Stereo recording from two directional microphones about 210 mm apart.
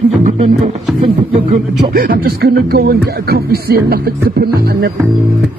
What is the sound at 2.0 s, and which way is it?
Speech, 45° right (ahead or behind).